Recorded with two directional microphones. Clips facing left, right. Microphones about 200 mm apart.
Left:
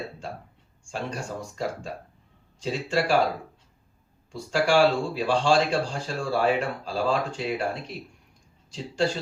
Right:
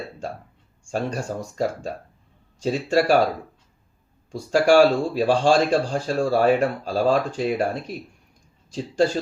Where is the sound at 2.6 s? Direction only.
45° right (ahead or behind).